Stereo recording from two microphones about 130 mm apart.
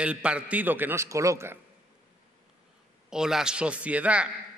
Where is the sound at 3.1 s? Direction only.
5° right (ahead or behind).